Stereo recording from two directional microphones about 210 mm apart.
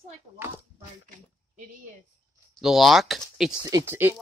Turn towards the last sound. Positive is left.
turn(degrees=-10)  # may be behind; listen again after turning